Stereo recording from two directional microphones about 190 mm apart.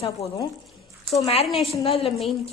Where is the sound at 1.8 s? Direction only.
30° left (ahead or behind).